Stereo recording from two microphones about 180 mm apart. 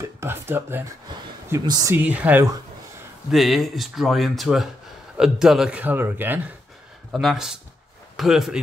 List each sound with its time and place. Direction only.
0.2 s a man's voice: 15° right (ahead or behind)